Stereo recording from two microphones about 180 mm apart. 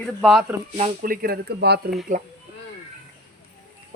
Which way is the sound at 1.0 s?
55° right (ahead or behind).